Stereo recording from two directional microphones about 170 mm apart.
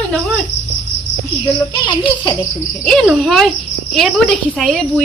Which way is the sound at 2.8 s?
5° right (ahead or behind).